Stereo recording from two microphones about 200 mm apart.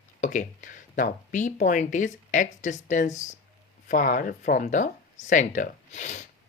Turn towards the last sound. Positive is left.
turn(degrees=35)  # may be behind; listen again after turning